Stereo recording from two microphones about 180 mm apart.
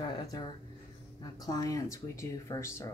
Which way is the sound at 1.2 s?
20° left (ahead or behind).